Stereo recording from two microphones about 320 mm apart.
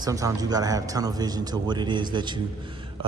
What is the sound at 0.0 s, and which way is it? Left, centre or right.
A man's voice, centre.